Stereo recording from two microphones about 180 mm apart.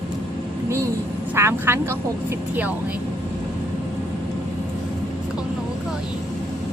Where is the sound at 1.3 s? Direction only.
15° right (ahead or behind).